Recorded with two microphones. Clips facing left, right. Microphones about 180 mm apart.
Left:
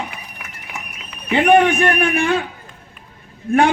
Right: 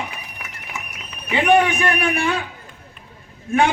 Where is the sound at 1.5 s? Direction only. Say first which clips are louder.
Left 3 dB; 50° left (ahead or behind).